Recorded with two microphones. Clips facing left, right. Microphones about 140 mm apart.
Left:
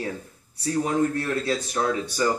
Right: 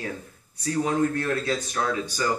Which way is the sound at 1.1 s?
30° left (ahead or behind).